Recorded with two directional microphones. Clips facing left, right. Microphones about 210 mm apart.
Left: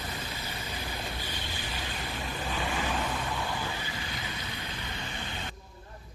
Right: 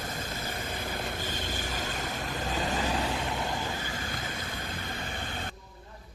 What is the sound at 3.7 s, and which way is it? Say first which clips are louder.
Vehicle: right 2 dB; 45° right (ahead or behind).